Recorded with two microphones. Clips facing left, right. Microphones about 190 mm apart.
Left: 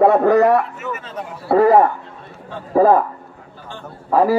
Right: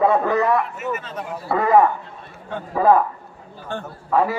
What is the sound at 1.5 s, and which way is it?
A man's voice, 35° left (ahead or behind).